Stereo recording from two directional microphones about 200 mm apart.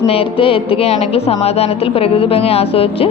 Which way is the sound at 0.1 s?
30° left (ahead or behind).